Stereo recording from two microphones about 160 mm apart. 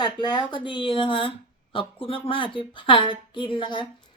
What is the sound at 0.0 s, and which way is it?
Speech, 25° left (ahead or behind).